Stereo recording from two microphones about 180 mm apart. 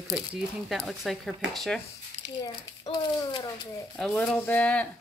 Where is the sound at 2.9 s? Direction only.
25° left (ahead or behind).